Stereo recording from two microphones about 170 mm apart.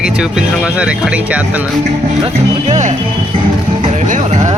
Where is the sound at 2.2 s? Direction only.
40° right (ahead or behind).